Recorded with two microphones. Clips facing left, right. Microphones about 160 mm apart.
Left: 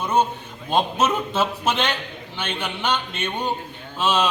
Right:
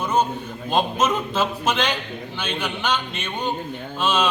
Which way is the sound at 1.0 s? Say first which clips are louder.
Even; centre (ahead or behind).